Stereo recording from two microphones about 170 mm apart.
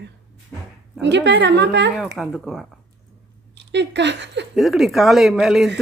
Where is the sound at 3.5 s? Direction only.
90° right.